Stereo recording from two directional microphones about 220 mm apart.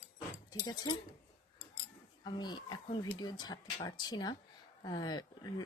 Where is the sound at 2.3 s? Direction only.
20° left (ahead or behind).